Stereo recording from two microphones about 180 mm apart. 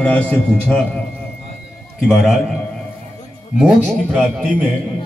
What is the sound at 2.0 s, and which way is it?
Speech, centre (ahead or behind).